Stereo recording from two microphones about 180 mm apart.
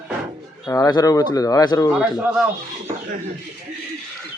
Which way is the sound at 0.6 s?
20° left (ahead or behind).